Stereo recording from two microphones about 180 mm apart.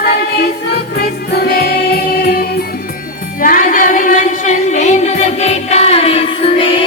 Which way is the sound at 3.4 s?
50° left (ahead or behind).